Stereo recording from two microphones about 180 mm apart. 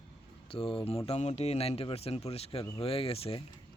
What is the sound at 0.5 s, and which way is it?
Speech, 30° left (ahead or behind).